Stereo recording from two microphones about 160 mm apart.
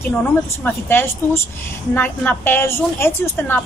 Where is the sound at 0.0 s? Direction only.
10° left (ahead or behind).